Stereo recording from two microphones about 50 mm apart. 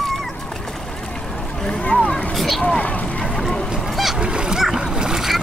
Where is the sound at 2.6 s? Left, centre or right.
Left.